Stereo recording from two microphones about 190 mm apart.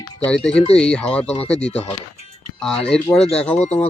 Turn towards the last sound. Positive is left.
turn(degrees=35)  # may be behind; listen again after turning